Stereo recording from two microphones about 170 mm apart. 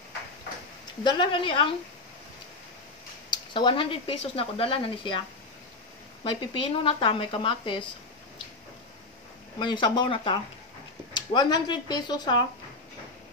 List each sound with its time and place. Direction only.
1.0 s speech: 30° left (ahead or behind)
3.5 s speech: 30° left (ahead or behind)
6.2 s speech: 30° left (ahead or behind)
9.6 s speech: 25° left (ahead or behind)